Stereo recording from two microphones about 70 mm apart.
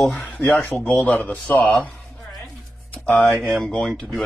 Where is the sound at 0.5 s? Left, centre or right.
Centre.